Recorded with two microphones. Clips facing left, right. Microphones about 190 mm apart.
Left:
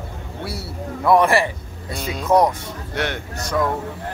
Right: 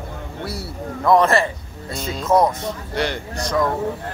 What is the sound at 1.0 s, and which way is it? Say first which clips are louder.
Speech: even; 10° left (ahead or behind).